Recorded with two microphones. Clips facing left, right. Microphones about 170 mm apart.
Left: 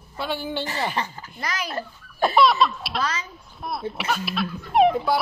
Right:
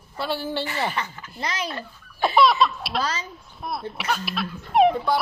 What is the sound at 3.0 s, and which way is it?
Speech, 35° right (ahead or behind).